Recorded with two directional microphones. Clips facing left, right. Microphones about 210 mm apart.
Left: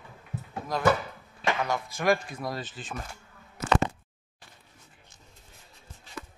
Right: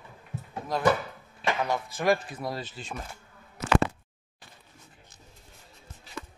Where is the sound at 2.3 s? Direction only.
10° right (ahead or behind).